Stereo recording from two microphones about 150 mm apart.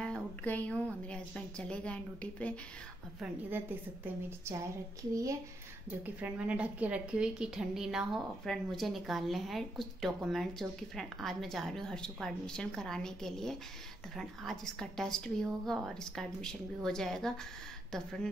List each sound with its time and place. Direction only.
0.0 s a woman's voice: 5° left (ahead or behind)
3.2 s a woman's voice: 15° right (ahead or behind)
5.9 s a woman's voice: 10° right (ahead or behind)